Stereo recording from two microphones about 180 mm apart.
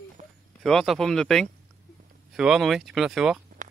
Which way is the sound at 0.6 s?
Centre (ahead or behind).